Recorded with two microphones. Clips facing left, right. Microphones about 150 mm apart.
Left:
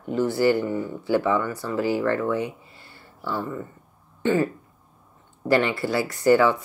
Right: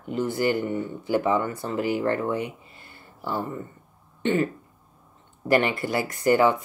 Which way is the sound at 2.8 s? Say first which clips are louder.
Even; 50° right (ahead or behind).